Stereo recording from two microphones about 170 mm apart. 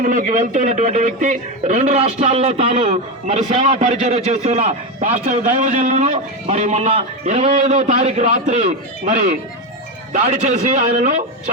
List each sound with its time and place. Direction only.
0.0 s a man's voice: 50° right (ahead or behind)